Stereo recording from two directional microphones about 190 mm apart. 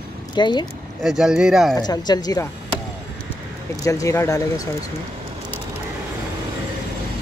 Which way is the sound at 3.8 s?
15° left (ahead or behind).